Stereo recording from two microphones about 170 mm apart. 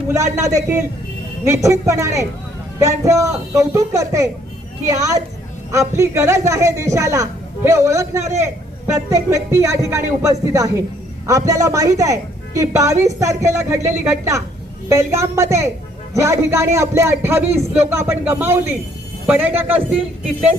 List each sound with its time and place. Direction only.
0.3 s a man's voice: 20° right (ahead or behind)